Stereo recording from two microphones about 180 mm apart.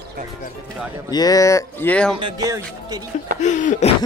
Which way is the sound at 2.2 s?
20° right (ahead or behind).